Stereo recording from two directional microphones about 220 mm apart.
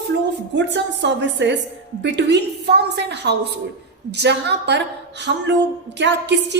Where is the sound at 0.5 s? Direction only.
55° right (ahead or behind).